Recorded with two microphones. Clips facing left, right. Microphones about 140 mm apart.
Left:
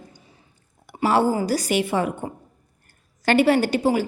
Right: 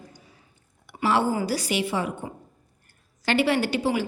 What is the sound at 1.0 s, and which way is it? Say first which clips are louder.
A woman's voice: left 3 dB; 40° left (ahead or behind).